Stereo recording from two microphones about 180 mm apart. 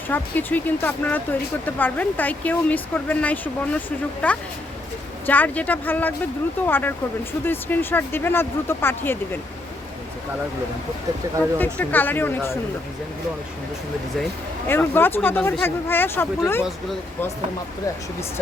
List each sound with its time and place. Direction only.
0.1 s speech: 10° left (ahead or behind)
11.5 s speech: 10° left (ahead or behind)
14.7 s speech: 10° left (ahead or behind)